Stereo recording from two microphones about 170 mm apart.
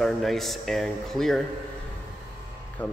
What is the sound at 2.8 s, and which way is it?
Speech, 10° left (ahead or behind).